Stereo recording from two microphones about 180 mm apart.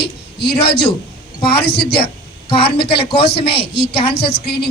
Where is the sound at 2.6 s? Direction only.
65° left (ahead or behind).